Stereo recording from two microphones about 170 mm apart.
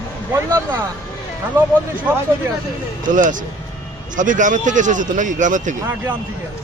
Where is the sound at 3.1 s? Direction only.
50° right (ahead or behind).